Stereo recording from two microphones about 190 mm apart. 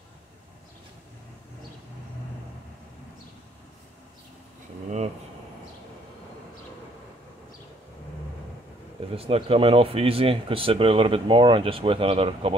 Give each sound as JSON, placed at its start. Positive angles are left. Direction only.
{"t": 9.1, "sound": "speech", "side_deg": -30}